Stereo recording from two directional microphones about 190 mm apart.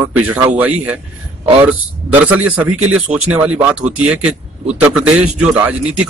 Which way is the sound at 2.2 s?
10° right (ahead or behind).